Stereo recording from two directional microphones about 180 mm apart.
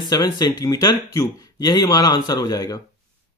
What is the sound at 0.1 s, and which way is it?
Speech, 20° left (ahead or behind).